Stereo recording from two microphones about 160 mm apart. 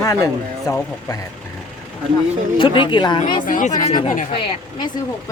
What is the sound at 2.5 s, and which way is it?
Speech, 30° left (ahead or behind).